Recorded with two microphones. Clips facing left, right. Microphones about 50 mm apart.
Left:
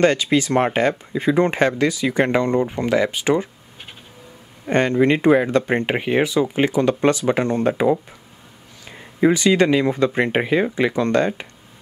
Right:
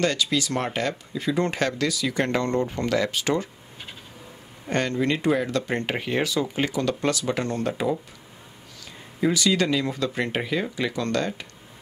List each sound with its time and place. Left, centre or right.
0.0 s speech: left
4.6 s speech: left
9.2 s speech: left